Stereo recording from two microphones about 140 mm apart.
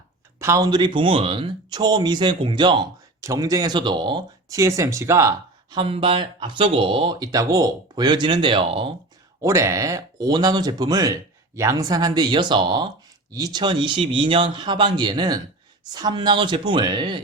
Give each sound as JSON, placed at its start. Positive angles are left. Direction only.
{"t": 0.3, "sound": "speech", "side_deg": -20}
{"t": 5.7, "sound": "speech", "side_deg": -40}
{"t": 9.4, "sound": "speech", "side_deg": -20}